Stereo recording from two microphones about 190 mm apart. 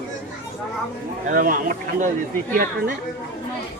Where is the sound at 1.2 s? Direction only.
45° right (ahead or behind).